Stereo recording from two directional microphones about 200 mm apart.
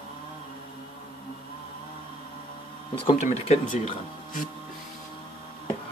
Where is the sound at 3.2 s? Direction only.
35° left (ahead or behind).